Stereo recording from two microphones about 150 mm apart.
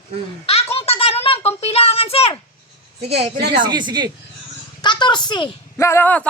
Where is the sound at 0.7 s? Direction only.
40° left (ahead or behind).